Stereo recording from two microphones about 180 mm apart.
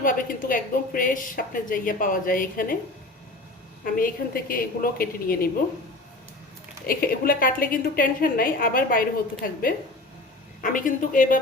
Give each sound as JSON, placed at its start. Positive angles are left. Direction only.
{"t": 0.0, "sound": "a woman's voice", "side_deg": 50}
{"t": 3.8, "sound": "a woman's voice", "side_deg": 50}
{"t": 6.8, "sound": "a woman's voice", "side_deg": 55}